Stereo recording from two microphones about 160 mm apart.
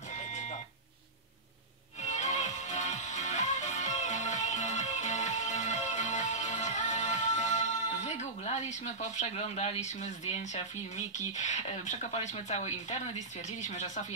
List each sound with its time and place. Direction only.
0.3 s a sound: 45° left (ahead or behind)
2.0 s music: 45° left (ahead or behind)
13.6 s speech: 50° left (ahead or behind)